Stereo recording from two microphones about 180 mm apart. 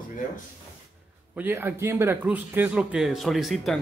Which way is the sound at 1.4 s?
10° right (ahead or behind).